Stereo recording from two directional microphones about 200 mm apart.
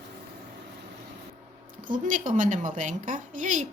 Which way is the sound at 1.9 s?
40° right (ahead or behind).